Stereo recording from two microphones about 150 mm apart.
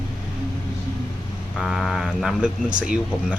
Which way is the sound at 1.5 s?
Centre (ahead or behind).